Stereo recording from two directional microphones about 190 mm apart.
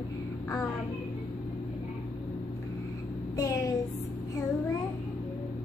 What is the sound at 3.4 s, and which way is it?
Speech, 15° left (ahead or behind).